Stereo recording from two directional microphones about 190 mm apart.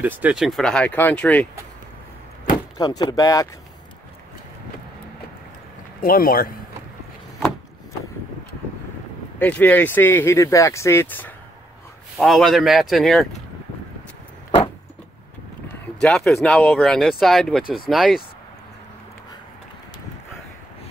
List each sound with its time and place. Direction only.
0.0 s speech: 10° right (ahead or behind)
2.8 s speech: 20° left (ahead or behind)
5.9 s speech: 50° left (ahead or behind)
9.4 s speech: 10° left (ahead or behind)
15.7 s speech: 5° left (ahead or behind)